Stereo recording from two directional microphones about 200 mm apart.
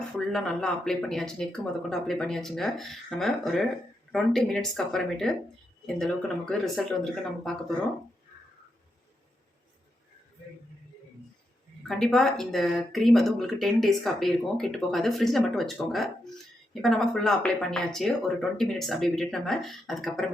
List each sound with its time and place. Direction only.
0.3 s speech: centre (ahead or behind)
11.9 s speech: centre (ahead or behind)